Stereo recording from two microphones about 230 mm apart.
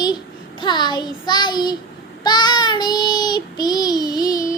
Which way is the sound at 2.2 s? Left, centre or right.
Centre.